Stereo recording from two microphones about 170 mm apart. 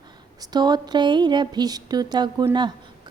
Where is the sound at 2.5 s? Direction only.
25° right (ahead or behind).